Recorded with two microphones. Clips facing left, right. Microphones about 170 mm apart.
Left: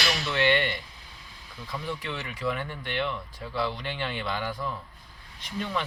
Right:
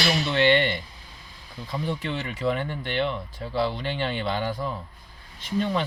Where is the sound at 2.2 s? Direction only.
25° right (ahead or behind).